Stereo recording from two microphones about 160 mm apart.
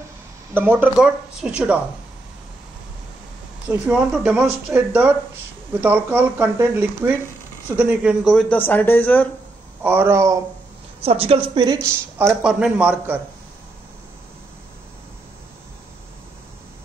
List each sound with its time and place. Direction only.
0.6 s speech: 10° right (ahead or behind)
3.6 s speech: 10° right (ahead or behind); by 9.3 s 10° left (ahead or behind)
9.8 s speech: 15° right (ahead or behind)
11.0 s a woman's voice: 40° right (ahead or behind)
12.3 s speech: 5° right (ahead or behind)